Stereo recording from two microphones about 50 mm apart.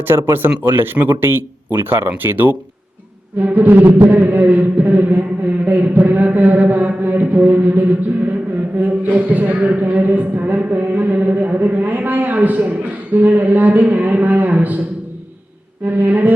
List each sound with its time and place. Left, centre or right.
0.0 s speech: right
5.6 s a sound: right
8.8 s speech: right
15.8 s speech: right